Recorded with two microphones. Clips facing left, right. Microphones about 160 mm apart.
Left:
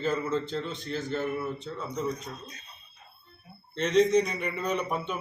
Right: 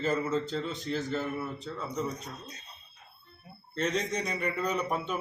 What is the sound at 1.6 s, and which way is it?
Speech, 40° right (ahead or behind).